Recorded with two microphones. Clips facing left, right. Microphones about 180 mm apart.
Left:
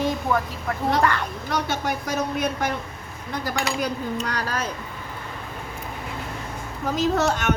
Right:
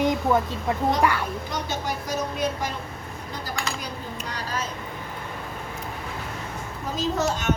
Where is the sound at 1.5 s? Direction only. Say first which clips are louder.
Left 8 dB; 65° left (ahead or behind).